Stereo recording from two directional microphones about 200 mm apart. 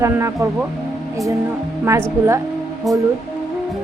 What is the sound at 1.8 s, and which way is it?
Speech, 15° right (ahead or behind).